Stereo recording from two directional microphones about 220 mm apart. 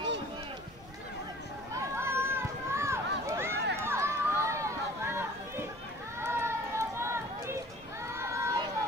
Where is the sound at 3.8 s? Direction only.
10° right (ahead or behind).